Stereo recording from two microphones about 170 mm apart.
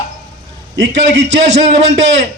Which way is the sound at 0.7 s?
90° right.